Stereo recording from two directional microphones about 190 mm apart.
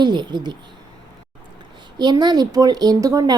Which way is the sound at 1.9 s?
20° right (ahead or behind).